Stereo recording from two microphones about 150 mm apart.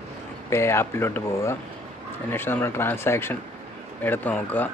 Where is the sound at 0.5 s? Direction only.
15° left (ahead or behind).